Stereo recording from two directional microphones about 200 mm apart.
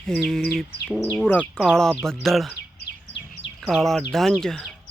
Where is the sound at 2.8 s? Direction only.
55° left (ahead or behind).